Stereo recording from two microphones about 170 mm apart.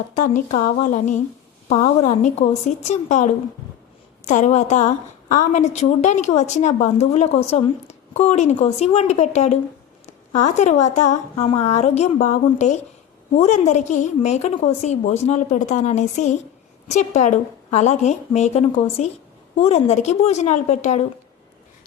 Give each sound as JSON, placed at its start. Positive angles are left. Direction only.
{"t": 0.1, "sound": "a woman's voice", "side_deg": 45}